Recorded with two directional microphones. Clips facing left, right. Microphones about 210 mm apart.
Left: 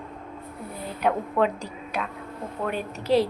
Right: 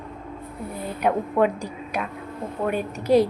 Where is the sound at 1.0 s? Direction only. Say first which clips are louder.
Right 2 dB; 10° right (ahead or behind).